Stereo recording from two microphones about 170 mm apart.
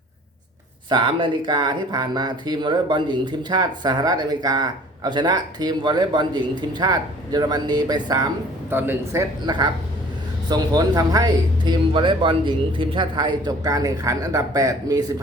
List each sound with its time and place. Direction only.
0.9 s speech: 30° right (ahead or behind)
8.7 s a man's voice: 10° right (ahead or behind)
10.5 s speech: 25° right (ahead or behind)